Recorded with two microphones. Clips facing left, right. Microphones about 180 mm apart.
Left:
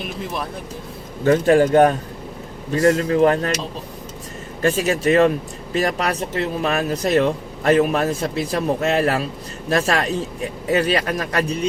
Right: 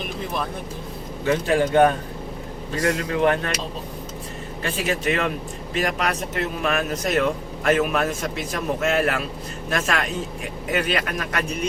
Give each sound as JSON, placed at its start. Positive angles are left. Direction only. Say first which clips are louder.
{"t": 1.2, "sound": "a man's voice", "louder": "left 6 dB", "side_deg": 45}
{"t": 4.6, "sound": "speech", "louder": "left 6 dB", "side_deg": 40}